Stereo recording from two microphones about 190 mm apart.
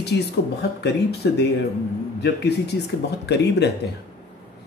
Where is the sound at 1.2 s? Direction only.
65° left (ahead or behind).